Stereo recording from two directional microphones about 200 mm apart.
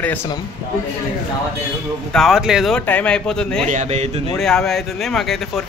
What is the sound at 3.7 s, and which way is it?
Speech, 35° right (ahead or behind).